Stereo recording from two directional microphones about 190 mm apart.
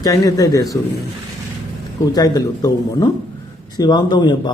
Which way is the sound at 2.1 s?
20° left (ahead or behind).